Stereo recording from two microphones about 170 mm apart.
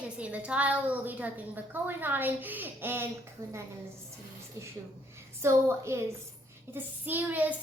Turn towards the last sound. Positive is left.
turn(degrees=-10)  # may be behind; listen again after turning